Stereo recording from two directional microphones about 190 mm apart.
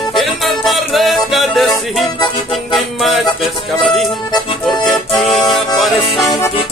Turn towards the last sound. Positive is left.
turn(degrees=0)  # may be behind; listen again after turning